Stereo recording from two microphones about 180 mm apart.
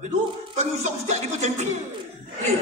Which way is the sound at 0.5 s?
40° right (ahead or behind).